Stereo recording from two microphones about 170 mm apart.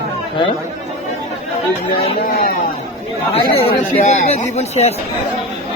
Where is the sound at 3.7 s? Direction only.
40° left (ahead or behind).